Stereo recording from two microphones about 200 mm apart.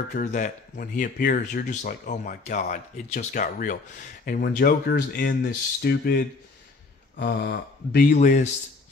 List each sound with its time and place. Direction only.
0.1 s speech: 40° left (ahead or behind); by 8.0 s 55° left (ahead or behind)
8.0 s speech: 35° left (ahead or behind)